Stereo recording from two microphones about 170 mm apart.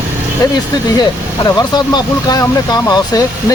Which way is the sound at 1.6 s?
25° left (ahead or behind).